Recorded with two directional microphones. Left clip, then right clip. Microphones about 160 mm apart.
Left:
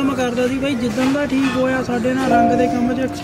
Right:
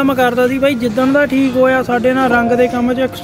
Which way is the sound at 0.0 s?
15° right (ahead or behind).